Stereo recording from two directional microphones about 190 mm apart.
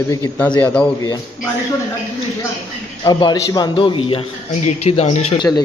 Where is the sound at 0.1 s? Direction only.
15° left (ahead or behind).